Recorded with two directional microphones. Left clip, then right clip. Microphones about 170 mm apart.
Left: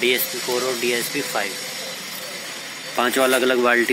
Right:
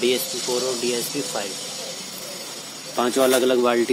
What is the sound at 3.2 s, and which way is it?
Speech, 15° left (ahead or behind).